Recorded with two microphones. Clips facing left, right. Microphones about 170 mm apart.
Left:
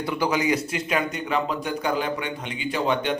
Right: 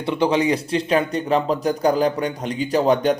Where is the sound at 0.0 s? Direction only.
25° right (ahead or behind).